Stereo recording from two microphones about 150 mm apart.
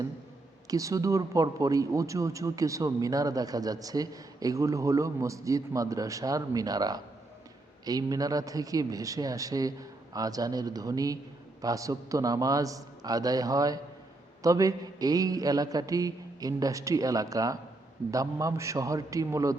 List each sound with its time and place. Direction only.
0.7 s speech: 25° right (ahead or behind)